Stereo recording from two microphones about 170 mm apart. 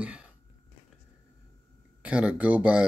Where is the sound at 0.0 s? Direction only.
5° right (ahead or behind).